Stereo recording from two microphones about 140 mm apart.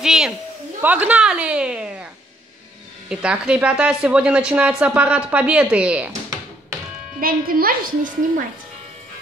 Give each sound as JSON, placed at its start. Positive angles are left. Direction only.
{"t": 0.0, "sound": "a sound", "side_deg": -5}
{"t": 0.8, "sound": "a woman's voice", "side_deg": -10}
{"t": 3.1, "sound": "speech", "side_deg": -5}
{"t": 7.2, "sound": "a woman's voice", "side_deg": -90}